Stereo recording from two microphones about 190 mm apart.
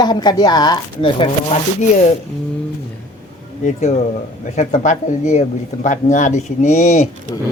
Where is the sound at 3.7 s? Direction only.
40° left (ahead or behind).